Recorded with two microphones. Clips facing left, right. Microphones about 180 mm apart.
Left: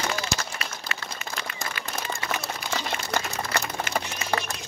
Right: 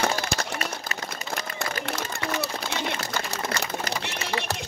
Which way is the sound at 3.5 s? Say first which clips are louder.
Left 3 dB; 55° left (ahead or behind).